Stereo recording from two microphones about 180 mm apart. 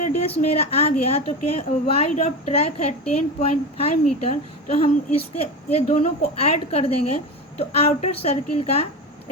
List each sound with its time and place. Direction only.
0.2 s a woman's voice: 35° left (ahead or behind)